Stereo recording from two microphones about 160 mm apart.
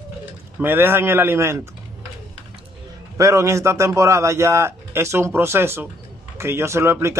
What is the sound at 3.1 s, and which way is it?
Speech, 20° right (ahead or behind).